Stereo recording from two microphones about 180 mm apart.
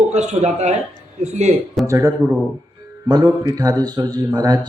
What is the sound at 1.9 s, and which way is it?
A man's voice, 15° right (ahead or behind).